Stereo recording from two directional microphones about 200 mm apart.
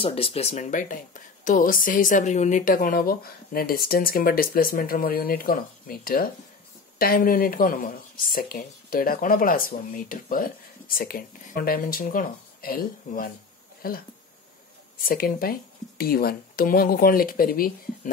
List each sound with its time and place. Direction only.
0.0 s speech: 30° left (ahead or behind); by 18.1 s 45° left (ahead or behind)